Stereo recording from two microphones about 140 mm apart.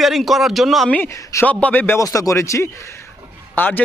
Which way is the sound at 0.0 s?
Centre (ahead or behind).